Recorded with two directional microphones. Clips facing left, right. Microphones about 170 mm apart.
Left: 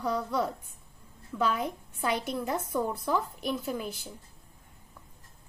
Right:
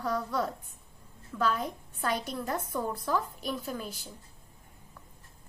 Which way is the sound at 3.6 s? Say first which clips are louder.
Left 3 dB; 15° left (ahead or behind).